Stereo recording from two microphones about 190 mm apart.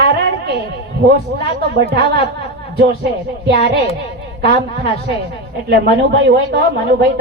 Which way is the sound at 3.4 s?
60° right (ahead or behind).